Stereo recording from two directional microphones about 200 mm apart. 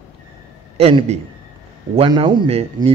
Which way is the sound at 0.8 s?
30° right (ahead or behind).